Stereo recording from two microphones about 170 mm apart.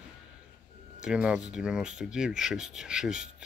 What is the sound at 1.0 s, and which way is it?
Speech, 5° right (ahead or behind).